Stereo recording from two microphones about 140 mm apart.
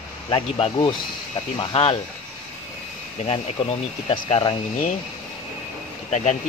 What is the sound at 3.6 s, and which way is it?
Speech, 35° left (ahead or behind).